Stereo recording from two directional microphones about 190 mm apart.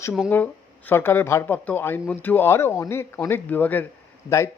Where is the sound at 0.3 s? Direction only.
10° left (ahead or behind).